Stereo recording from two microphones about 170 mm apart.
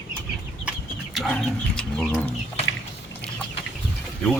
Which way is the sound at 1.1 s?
5° left (ahead or behind).